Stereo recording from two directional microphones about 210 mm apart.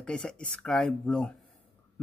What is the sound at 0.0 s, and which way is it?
Speech, 5° left (ahead or behind).